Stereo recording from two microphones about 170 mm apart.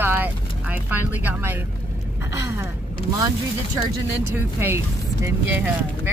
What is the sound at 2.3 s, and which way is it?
Gasp, 15° right (ahead or behind).